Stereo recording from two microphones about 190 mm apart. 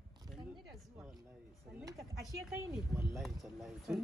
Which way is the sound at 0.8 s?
5° right (ahead or behind).